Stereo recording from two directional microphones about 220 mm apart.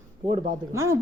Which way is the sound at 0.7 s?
15° right (ahead or behind).